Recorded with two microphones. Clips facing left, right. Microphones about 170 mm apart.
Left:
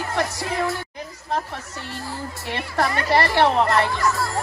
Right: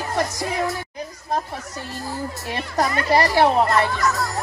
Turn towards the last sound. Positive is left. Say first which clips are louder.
# right 1 dB
turn(degrees=-10)  # may be behind; listen again after turning